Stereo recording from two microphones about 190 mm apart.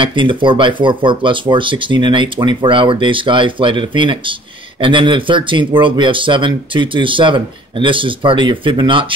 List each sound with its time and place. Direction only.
0.0 s speech: 25° right (ahead or behind)